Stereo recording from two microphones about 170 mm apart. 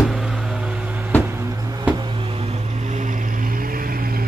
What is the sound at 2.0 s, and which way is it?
Vehicle, 35° right (ahead or behind).